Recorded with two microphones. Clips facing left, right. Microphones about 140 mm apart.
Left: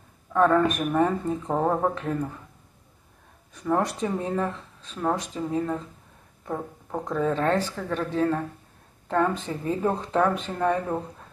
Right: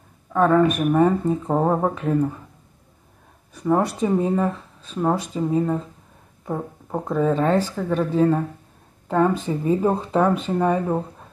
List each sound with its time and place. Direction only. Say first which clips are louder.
0.3 s speech: right 3 dB; 5° right (ahead or behind)
3.6 s speech: right 5 dB; 10° right (ahead or behind)